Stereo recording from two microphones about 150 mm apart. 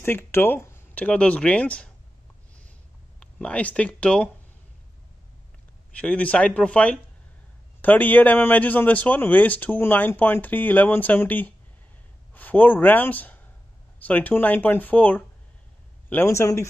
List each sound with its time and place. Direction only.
0.0 s speech: 15° left (ahead or behind)
3.2 s speech: 10° left (ahead or behind)
5.9 s speech: 10° left (ahead or behind)